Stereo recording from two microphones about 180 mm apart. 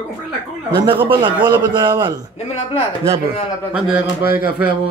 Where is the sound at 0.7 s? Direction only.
30° right (ahead or behind).